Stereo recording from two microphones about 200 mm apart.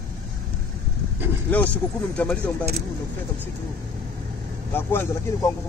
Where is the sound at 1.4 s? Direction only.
10° left (ahead or behind).